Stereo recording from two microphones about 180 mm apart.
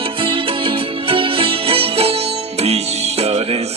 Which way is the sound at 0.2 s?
30° right (ahead or behind).